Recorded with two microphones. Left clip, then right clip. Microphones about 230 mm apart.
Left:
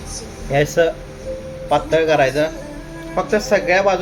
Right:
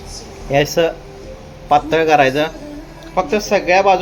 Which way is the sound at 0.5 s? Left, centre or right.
Right.